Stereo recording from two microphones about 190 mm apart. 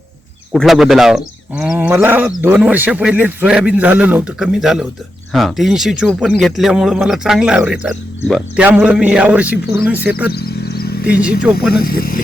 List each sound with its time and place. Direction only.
0.5 s a man's voice: centre (ahead or behind)
10.3 s vehicle: 55° left (ahead or behind)
11.0 s a man's voice: 5° right (ahead or behind)
11.7 s speech: 50° left (ahead or behind)